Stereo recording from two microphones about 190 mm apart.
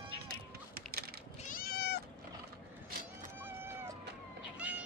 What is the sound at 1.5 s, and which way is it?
Cat, 55° left (ahead or behind).